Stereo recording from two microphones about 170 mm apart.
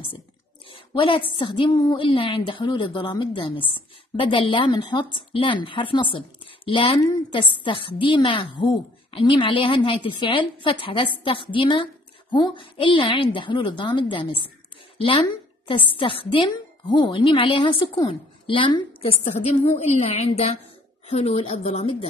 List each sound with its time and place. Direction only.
0.7 s a woman's voice: 30° left (ahead or behind)